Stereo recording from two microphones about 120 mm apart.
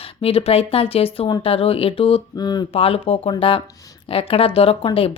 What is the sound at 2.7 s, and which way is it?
Speech, 55° left (ahead or behind).